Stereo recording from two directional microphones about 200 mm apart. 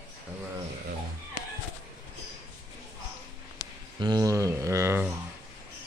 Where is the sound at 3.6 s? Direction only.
20° left (ahead or behind).